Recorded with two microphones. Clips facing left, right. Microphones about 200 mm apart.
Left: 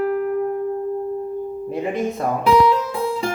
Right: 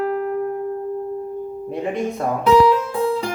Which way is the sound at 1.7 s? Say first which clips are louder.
Even; centre (ahead or behind).